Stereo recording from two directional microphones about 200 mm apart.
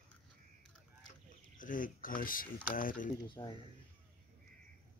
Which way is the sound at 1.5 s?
40° left (ahead or behind).